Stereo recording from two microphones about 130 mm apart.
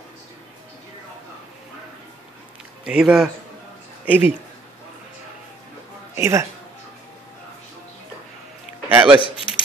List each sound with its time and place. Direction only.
2.8 s speech: 5° right (ahead or behind)
6.1 s speech: 20° right (ahead or behind)
8.8 s a man's voice: 15° right (ahead or behind)